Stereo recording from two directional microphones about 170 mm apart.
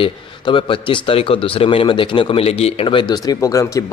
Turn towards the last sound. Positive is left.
turn(degrees=20)  # may be behind; listen again after turning